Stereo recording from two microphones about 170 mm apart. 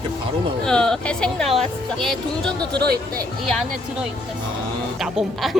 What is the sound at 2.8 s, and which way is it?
Speech, 65° right (ahead or behind).